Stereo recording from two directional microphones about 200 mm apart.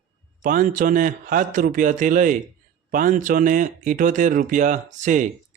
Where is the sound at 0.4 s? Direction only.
40° right (ahead or behind).